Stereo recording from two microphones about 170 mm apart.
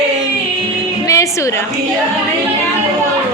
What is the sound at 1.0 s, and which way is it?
Music, 20° left (ahead or behind).